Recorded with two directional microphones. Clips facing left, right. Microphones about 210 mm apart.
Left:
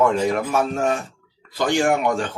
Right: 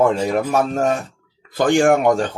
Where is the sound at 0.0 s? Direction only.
35° right (ahead or behind).